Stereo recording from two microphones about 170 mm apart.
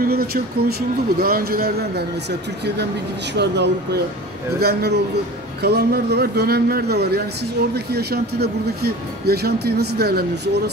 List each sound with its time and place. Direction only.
0.0 s speech: 65° right (ahead or behind)
3.3 s speech: 80° right
4.6 s speech: 70° right (ahead or behind)